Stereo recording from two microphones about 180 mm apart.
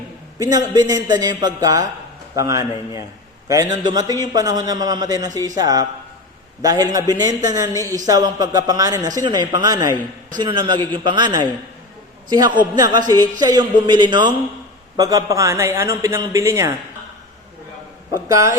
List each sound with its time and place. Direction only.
0.3 s a man's voice: 20° right (ahead or behind)
18.3 s a man's voice: 20° right (ahead or behind)